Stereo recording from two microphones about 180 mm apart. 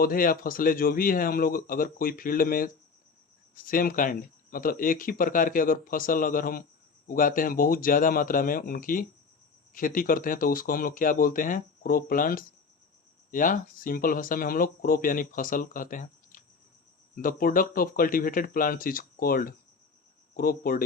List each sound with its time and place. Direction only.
0.0 s speech: 50° left (ahead or behind)